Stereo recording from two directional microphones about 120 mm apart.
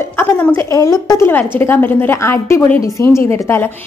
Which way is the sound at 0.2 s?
15° left (ahead or behind).